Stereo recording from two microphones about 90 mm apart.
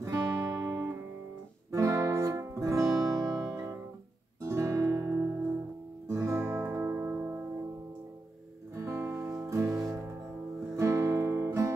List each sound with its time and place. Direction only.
0.0 s music: 35° right (ahead or behind)
4.4 s guitar: 35° right (ahead or behind)
8.7 s music: 30° right (ahead or behind)
10.8 s guitar: 30° right (ahead or behind)